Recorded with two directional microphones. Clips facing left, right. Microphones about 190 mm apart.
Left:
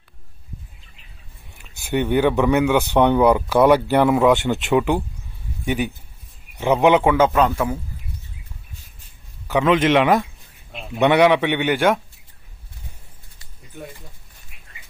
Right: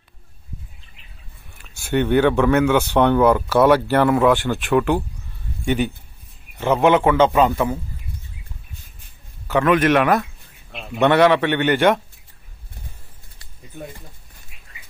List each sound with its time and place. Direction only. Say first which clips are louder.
1.6 s speech: right 2 dB; 15° left (ahead or behind)
6.6 s speech: even; 15° left (ahead or behind)
7.2 s a man's voice: right 1 dB; centre (ahead or behind)
9.5 s speech: even; 20° left (ahead or behind)